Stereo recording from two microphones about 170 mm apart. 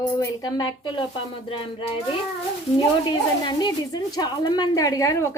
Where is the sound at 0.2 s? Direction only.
25° left (ahead or behind).